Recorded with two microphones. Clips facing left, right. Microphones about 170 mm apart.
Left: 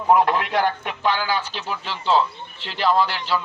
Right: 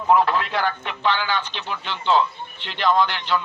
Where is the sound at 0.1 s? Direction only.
15° left (ahead or behind).